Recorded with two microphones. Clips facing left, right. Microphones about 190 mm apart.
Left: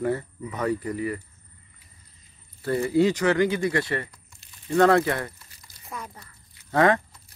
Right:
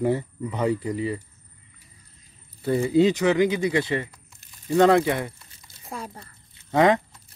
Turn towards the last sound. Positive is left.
turn(degrees=-20)  # may be behind; listen again after turning